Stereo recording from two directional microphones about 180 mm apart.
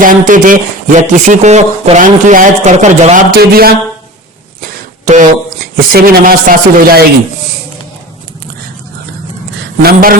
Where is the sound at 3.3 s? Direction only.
55° right (ahead or behind).